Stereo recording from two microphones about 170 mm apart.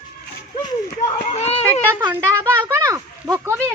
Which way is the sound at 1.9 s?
10° right (ahead or behind).